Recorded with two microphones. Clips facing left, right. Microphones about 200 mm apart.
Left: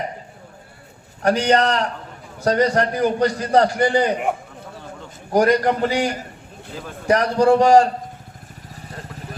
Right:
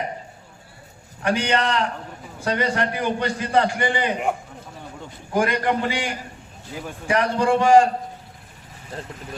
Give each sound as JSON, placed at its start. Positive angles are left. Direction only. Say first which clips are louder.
{"t": 1.2, "sound": "a man's voice", "louder": "left 5 dB", "side_deg": 40}
{"t": 5.3, "sound": "a man's voice", "louder": "left 5 dB", "side_deg": 40}